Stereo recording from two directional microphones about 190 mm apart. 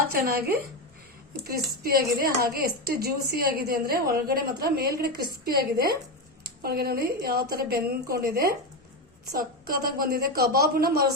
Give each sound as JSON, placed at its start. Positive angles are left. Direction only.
{"t": 0.1, "sound": "a woman's voice", "side_deg": -50}